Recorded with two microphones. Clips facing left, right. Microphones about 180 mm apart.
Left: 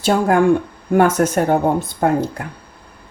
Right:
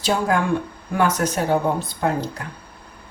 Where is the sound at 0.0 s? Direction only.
50° left (ahead or behind).